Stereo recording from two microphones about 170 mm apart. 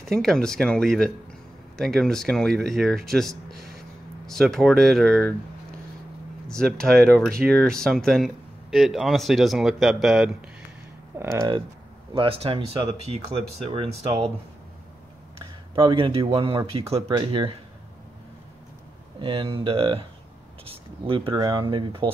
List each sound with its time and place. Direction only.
0.0 s speech: 5° left (ahead or behind)
6.5 s speech: 5° left (ahead or behind)
11.3 s speech: 25° right (ahead or behind)
15.7 s speech: 30° right (ahead or behind)
19.1 s speech: 30° right (ahead or behind)